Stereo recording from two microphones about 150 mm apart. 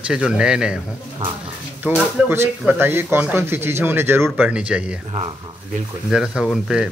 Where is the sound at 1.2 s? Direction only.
15° right (ahead or behind).